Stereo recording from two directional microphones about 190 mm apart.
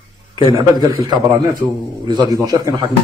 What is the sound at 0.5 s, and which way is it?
A man's voice, 20° right (ahead or behind).